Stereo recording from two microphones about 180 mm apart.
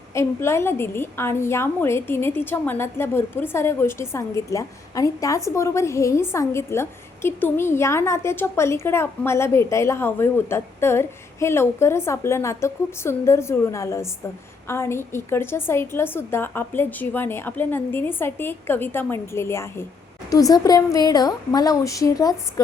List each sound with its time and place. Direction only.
0.1 s a woman's voice: 15° left (ahead or behind)